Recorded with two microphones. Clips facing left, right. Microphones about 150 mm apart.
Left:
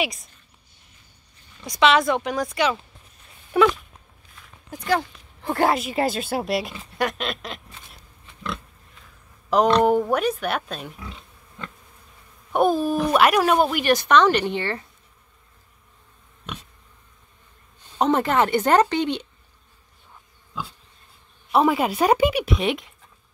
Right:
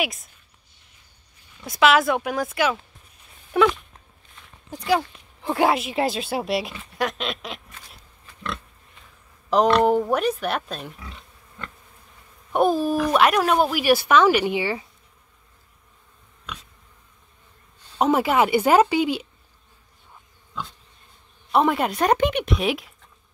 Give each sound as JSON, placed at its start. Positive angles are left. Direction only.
{"t": 0.0, "sound": "speech", "side_deg": 0}
{"t": 1.6, "sound": "speech", "side_deg": -5}
{"t": 3.5, "sound": "a sound", "side_deg": 0}
{"t": 4.7, "sound": "speech", "side_deg": -5}
{"t": 7.8, "sound": "pig", "side_deg": 20}
{"t": 9.8, "sound": "speech", "side_deg": 0}
{"t": 17.9, "sound": "speech", "side_deg": -5}
{"t": 21.5, "sound": "speech", "side_deg": 0}